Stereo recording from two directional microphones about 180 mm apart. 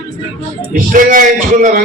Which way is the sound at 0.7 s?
45° right (ahead or behind).